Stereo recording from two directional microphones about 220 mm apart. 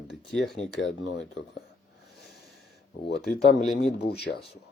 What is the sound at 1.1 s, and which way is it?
Speech, 50° left (ahead or behind).